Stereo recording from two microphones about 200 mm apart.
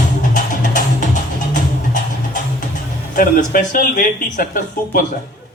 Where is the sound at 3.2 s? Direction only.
40° left (ahead or behind).